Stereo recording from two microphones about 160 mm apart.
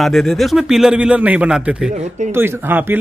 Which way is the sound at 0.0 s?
Centre (ahead or behind).